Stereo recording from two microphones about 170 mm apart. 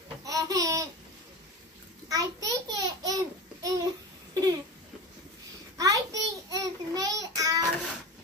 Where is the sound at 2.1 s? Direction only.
20° right (ahead or behind).